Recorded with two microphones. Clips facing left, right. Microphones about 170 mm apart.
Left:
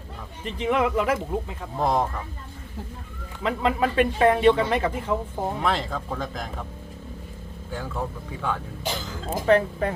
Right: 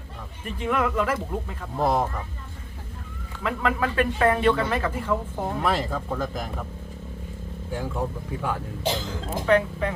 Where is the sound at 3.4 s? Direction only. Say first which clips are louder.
Left 2 dB; 20° left (ahead or behind).